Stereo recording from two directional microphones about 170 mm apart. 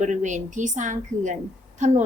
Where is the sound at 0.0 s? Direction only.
45° right (ahead or behind).